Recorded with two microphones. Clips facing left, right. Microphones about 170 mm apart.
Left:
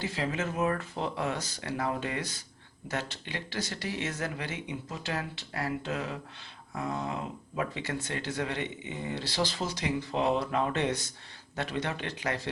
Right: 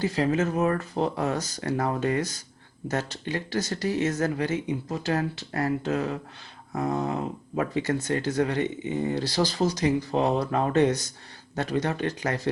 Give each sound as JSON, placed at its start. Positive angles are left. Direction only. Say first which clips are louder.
{"t": 0.0, "sound": "speech", "louder": "right 8 dB", "side_deg": -40}